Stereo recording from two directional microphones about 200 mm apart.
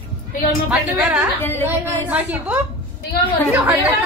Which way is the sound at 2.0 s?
10° right (ahead or behind).